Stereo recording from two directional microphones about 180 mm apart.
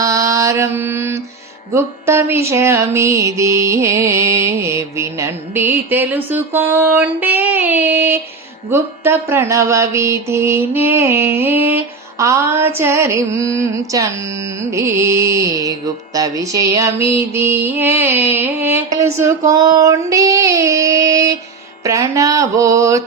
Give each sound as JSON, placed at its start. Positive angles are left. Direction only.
{"t": 0.0, "sound": "mantra", "side_deg": -20}
{"t": 1.7, "sound": "music", "side_deg": -15}
{"t": 19.2, "sound": "female singing", "side_deg": -15}
{"t": 21.8, "sound": "music", "side_deg": -15}